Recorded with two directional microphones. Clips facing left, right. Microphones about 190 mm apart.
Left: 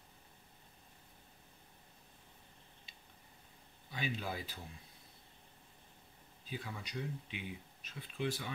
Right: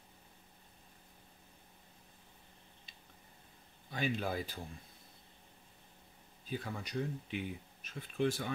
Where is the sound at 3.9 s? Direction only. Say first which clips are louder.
Right 5 dB; 45° right (ahead or behind).